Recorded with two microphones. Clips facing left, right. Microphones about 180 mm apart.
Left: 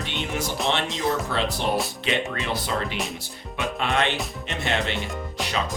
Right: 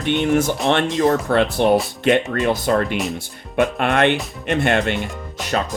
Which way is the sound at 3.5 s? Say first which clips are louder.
Right 8 dB; 60° right (ahead or behind).